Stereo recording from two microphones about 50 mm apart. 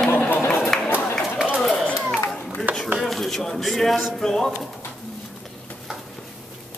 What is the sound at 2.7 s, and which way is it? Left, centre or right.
Chopping, right.